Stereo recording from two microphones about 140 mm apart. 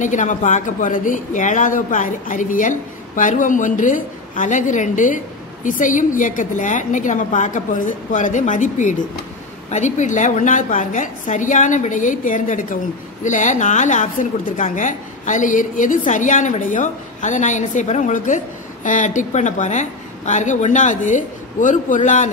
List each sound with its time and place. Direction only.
0.0 s speech: 60° left (ahead or behind)